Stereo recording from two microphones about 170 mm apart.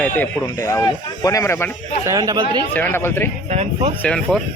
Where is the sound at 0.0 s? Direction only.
15° left (ahead or behind).